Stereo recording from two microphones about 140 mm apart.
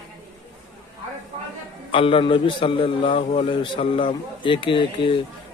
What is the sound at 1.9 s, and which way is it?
A man's voice, 40° left (ahead or behind).